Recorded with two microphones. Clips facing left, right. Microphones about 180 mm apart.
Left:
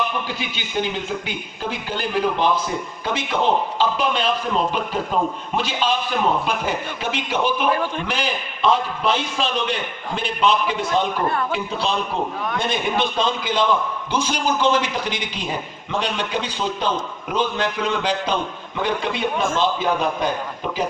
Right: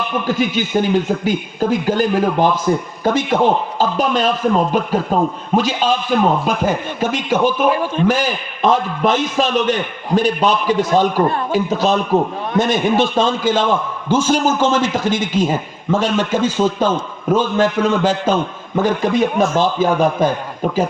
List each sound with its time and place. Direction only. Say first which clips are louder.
0.3 s a man's voice: right 12 dB; 45° right (ahead or behind)